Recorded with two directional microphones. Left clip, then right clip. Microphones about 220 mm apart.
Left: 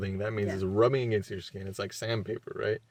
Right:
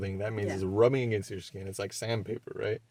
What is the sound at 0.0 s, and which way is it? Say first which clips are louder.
Speech: left 1 dB; 15° left (ahead or behind).